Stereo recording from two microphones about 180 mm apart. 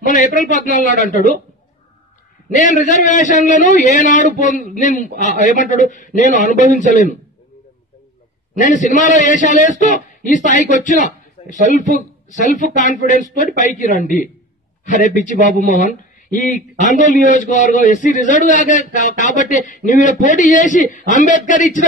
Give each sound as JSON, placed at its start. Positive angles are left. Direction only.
{"t": 0.0, "sound": "a man's voice", "side_deg": 45}
{"t": 2.5, "sound": "a man's voice", "side_deg": 45}
{"t": 8.5, "sound": "a man's voice", "side_deg": 45}